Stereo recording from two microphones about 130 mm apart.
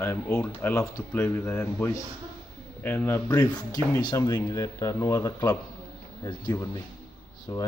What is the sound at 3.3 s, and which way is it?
Speech, 30° left (ahead or behind).